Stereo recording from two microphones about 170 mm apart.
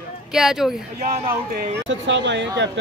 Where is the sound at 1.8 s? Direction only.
90° right.